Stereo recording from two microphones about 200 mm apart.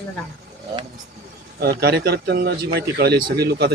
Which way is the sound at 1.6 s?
50° right (ahead or behind).